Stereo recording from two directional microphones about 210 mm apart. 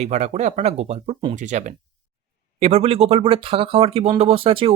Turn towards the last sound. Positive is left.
turn(degrees=-25)  # may be behind; listen again after turning